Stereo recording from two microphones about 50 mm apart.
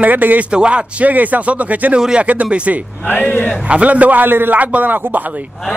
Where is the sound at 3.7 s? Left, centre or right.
Right.